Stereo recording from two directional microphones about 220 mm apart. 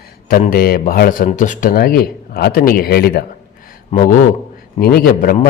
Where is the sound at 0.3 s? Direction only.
40° left (ahead or behind).